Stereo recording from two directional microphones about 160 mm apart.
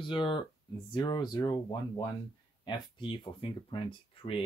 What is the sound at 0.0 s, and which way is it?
Speech, 30° left (ahead or behind).